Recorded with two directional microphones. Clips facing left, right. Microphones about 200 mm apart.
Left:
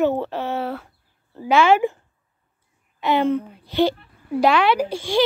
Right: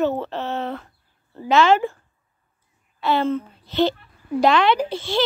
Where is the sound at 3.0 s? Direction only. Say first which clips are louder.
Left 2 dB; 15° left (ahead or behind).